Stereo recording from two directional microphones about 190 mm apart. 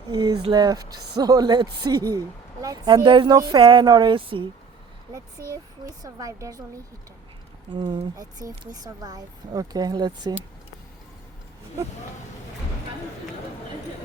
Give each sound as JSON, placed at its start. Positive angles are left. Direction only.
{"t": 0.1, "sound": "speech", "side_deg": -20}
{"t": 6.0, "sound": "speech", "side_deg": -20}
{"t": 7.7, "sound": "speech", "side_deg": -25}